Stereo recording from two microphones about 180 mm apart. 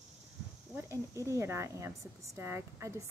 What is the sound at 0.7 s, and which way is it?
Speech, 15° right (ahead or behind).